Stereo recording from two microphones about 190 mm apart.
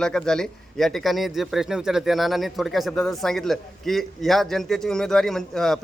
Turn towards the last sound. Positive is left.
turn(degrees=0)  # may be behind; listen again after turning